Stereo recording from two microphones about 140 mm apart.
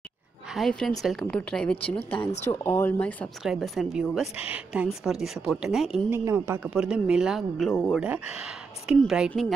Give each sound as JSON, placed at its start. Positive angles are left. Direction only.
{"t": 0.5, "sound": "a woman's voice", "side_deg": 0}
{"t": 2.4, "sound": "speech", "side_deg": 15}
{"t": 3.4, "sound": "a woman's voice", "side_deg": 0}
{"t": 6.0, "sound": "a woman's voice", "side_deg": -20}
{"t": 6.7, "sound": "a woman's voice", "side_deg": -5}
{"t": 8.0, "sound": "speech", "side_deg": -5}